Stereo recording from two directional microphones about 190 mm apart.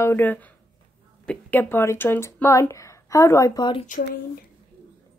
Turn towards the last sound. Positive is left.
turn(degrees=45)  # may be behind; listen again after turning